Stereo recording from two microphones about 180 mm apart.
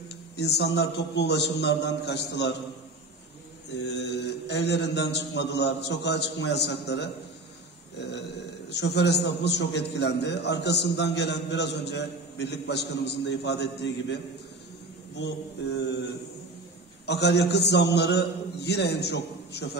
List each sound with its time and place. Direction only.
0.4 s a man's voice: 65° left (ahead or behind)
3.7 s a man's voice: 75° left (ahead or behind)
8.6 s a man's voice: 70° left (ahead or behind)
17.0 s a man's voice: 70° left (ahead or behind)